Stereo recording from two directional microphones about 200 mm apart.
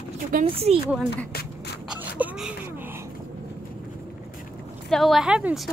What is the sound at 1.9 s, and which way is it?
Wail, 5° right (ahead or behind).